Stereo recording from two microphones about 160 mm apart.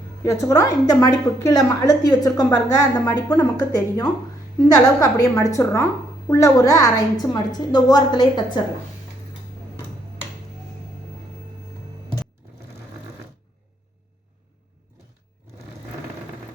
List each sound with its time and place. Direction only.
0.3 s a woman's voice: 20° left (ahead or behind)